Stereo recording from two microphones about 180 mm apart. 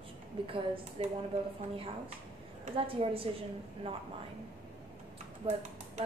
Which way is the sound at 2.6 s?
30° right (ahead or behind).